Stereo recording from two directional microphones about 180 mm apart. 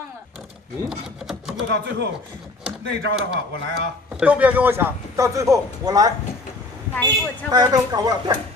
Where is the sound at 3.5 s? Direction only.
75° right (ahead or behind).